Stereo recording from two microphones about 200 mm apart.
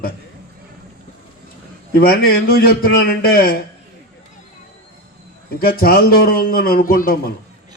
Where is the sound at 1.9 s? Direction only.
50° left (ahead or behind).